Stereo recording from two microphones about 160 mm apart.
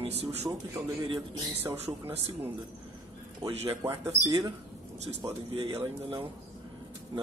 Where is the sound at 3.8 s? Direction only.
15° right (ahead or behind).